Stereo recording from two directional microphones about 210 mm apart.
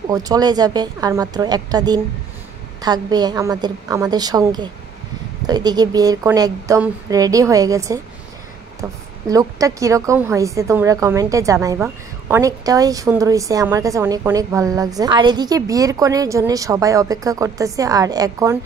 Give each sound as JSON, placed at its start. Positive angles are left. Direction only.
{"t": 0.1, "sound": "a woman's voice", "side_deg": -20}